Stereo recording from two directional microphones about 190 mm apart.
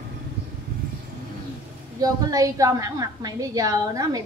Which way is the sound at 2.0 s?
20° right (ahead or behind).